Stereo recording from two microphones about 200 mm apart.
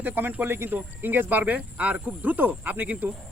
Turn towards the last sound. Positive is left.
turn(degrees=-10)  # may be behind; listen again after turning